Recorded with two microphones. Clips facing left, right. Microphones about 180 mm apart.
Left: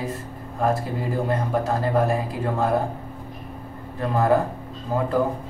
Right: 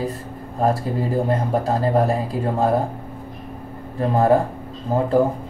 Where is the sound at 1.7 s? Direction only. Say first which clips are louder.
Right 3 dB; 35° right (ahead or behind).